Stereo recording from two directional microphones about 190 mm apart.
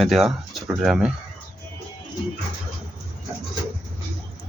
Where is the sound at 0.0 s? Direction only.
Centre (ahead or behind).